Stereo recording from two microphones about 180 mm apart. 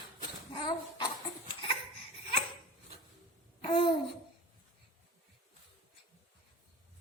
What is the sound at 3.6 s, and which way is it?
Babbling, 30° left (ahead or behind).